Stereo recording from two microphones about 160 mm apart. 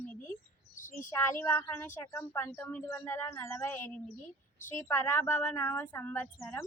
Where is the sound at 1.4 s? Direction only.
15° left (ahead or behind).